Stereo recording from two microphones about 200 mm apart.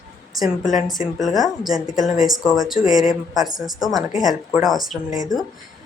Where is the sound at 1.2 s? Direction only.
Centre (ahead or behind).